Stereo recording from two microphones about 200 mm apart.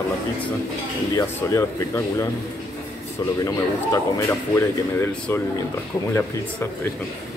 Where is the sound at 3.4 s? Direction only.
15° left (ahead or behind).